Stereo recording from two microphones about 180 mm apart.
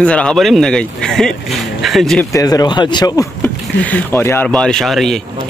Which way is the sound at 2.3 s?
20° left (ahead or behind).